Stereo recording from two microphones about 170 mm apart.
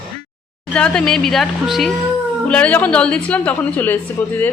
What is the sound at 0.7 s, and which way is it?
A woman's voice, 5° left (ahead or behind).